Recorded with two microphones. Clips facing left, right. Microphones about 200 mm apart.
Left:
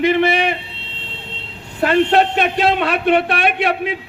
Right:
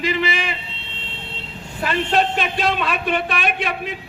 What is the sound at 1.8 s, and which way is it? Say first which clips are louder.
A man's voice: left 6 dB; 65° left (ahead or behind).